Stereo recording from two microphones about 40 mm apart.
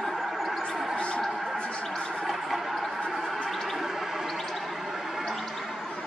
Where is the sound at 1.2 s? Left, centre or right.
Centre.